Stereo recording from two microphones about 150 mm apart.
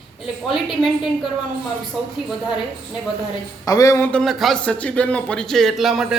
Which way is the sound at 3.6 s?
25° left (ahead or behind).